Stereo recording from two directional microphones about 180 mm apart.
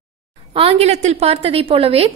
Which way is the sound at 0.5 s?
30° right (ahead or behind).